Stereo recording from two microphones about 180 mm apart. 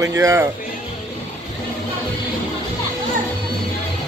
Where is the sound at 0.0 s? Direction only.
15° right (ahead or behind).